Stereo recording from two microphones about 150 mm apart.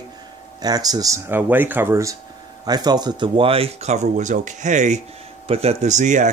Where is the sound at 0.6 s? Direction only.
25° right (ahead or behind).